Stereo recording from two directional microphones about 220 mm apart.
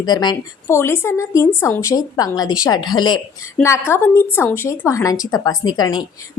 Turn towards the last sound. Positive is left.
turn(degrees=20)  # may be behind; listen again after turning